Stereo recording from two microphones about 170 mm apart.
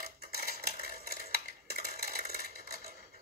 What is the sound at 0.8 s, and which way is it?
Stir, 60° right (ahead or behind).